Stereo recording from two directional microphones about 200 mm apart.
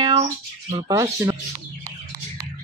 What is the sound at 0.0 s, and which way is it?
Speech, 30° right (ahead or behind).